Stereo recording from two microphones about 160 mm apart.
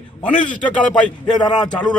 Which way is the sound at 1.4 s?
25° left (ahead or behind).